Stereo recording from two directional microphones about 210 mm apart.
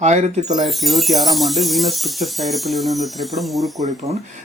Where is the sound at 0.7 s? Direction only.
Centre (ahead or behind).